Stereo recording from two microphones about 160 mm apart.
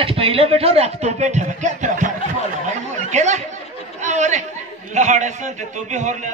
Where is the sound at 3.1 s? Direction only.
50° right (ahead or behind).